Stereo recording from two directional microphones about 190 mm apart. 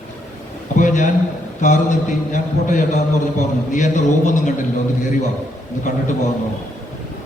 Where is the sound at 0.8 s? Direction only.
40° left (ahead or behind).